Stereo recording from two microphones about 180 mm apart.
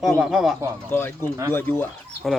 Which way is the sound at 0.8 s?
10° left (ahead or behind).